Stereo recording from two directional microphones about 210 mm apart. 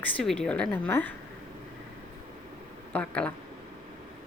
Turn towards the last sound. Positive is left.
turn(degrees=5)  # may be behind; listen again after turning